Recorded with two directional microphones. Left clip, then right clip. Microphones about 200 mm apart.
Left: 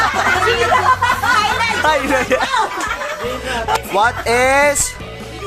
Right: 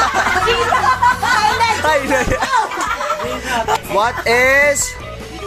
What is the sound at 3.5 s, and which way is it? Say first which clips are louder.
Speech: right 1 dB; 5° left (ahead or behind).